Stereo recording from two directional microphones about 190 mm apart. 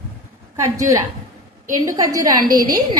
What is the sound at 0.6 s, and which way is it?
A woman's voice, 15° right (ahead or behind).